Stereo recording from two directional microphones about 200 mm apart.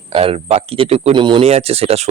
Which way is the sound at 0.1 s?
30° right (ahead or behind).